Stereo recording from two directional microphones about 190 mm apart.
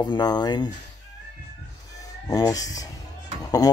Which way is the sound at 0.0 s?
20° left (ahead or behind).